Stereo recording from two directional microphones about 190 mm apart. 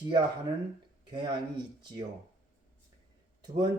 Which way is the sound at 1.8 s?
25° right (ahead or behind).